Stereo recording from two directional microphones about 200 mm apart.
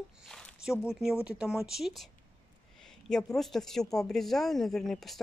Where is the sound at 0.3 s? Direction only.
5° left (ahead or behind).